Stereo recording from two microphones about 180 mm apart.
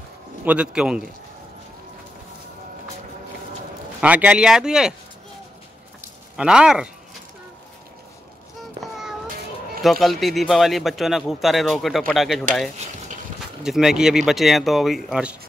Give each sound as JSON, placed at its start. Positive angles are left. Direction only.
{"t": 0.5, "sound": "a man's voice", "side_deg": -5}
{"t": 4.0, "sound": "a man's voice", "side_deg": -5}
{"t": 6.3, "sound": "a man's voice", "side_deg": -5}
{"t": 8.8, "sound": "a sound", "side_deg": 0}
{"t": 9.8, "sound": "a man's voice", "side_deg": 0}
{"t": 12.8, "sound": "a sound", "side_deg": -40}
{"t": 13.6, "sound": "a man's voice", "side_deg": -5}